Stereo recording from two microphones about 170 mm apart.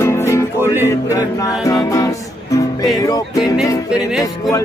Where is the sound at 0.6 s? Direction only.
15° right (ahead or behind).